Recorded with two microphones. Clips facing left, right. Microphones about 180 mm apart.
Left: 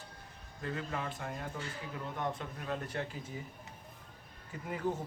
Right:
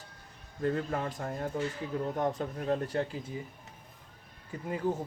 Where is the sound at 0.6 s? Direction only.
40° right (ahead or behind).